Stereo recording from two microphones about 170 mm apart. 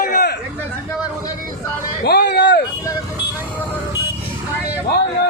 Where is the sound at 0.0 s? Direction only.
65° left (ahead or behind).